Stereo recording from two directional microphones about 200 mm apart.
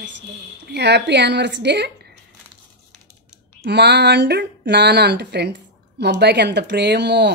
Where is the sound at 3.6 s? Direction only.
55° right (ahead or behind).